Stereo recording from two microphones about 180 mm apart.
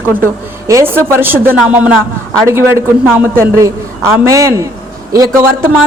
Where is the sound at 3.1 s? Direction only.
15° right (ahead or behind).